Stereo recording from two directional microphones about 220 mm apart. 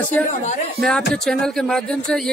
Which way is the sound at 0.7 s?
5° left (ahead or behind).